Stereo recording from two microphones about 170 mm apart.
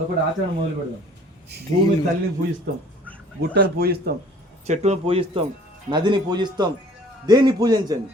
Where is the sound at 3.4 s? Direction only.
70° right (ahead or behind).